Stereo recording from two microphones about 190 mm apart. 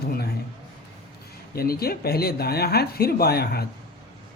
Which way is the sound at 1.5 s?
55° left (ahead or behind).